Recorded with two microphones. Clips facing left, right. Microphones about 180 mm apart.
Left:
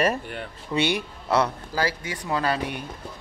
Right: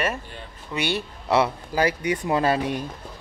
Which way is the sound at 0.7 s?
20° left (ahead or behind).